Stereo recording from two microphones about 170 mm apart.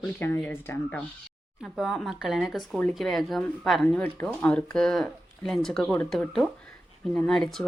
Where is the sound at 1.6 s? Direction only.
Centre (ahead or behind).